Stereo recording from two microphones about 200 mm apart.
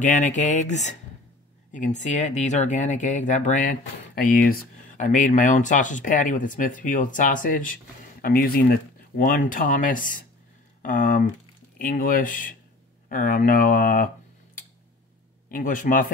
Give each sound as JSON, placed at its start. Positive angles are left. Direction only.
{"t": 0.0, "sound": "speech", "side_deg": 40}
{"t": 15.5, "sound": "speech", "side_deg": 45}